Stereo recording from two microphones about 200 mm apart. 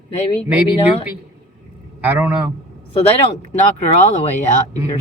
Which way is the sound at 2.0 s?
10° right (ahead or behind).